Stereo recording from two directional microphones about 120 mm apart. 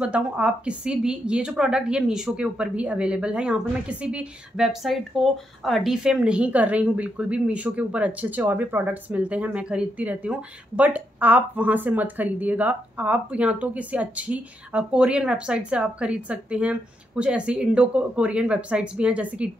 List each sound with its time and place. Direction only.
0.0 s a woman's voice: 10° right (ahead or behind)